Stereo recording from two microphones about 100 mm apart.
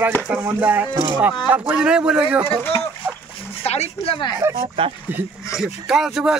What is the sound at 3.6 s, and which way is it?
Speech, 90° left.